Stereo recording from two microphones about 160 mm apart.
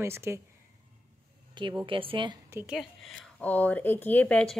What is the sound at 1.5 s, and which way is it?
Speech, 30° right (ahead or behind).